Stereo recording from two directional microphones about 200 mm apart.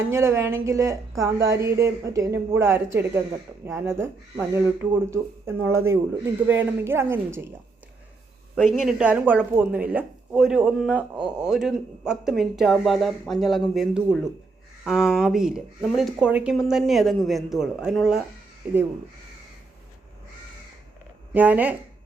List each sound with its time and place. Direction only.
0.1 s a woman's voice: 15° right (ahead or behind)
8.5 s speech: centre (ahead or behind)
11.2 s speech: 20° right (ahead or behind)
11.4 s a woman's voice: centre (ahead or behind)
21.3 s a woman's voice: 10° right (ahead or behind)